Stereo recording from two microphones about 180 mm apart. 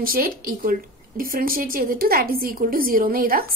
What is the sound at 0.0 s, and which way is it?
A woman's voice, 55° right (ahead or behind).